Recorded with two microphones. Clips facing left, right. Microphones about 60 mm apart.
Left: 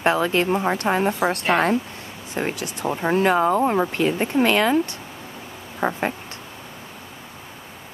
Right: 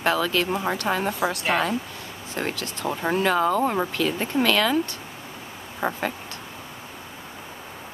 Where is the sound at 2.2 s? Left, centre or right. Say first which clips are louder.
Left 3 dB; centre.